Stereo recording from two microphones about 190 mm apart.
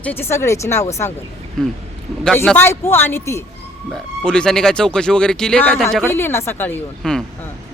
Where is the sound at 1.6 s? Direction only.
5° left (ahead or behind).